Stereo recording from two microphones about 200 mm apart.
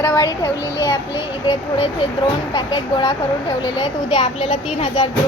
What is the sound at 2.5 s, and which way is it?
Speech, 25° left (ahead or behind).